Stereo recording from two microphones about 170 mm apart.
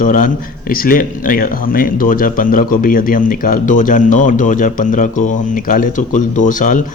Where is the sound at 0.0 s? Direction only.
50° left (ahead or behind).